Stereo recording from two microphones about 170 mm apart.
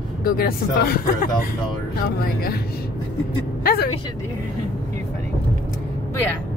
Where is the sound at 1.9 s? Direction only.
60° left (ahead or behind).